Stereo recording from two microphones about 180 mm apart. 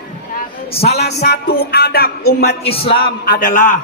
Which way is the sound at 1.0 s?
60° left (ahead or behind).